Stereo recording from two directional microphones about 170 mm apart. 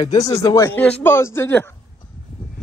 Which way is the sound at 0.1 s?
20° left (ahead or behind).